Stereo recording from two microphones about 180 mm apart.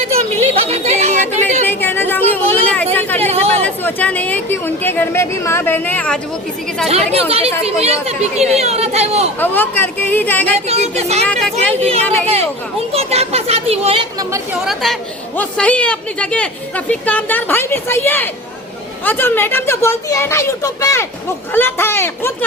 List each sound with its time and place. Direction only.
0.5 s chatter: 35° right (ahead or behind)
1.6 s chatter: 10° left (ahead or behind)
3.2 s chatter: 35° right (ahead or behind)
3.6 s speech: 10° left (ahead or behind)
6.8 s speech: 35° right (ahead or behind)
9.4 s speech: 10° left (ahead or behind)
10.7 s speech: 35° right (ahead or behind)
14.6 s a woman's voice: centre (ahead or behind)